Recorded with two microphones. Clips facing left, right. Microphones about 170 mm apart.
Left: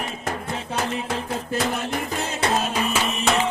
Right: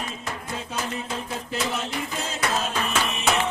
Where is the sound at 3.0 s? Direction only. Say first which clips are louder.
Left 2 dB; centre (ahead or behind).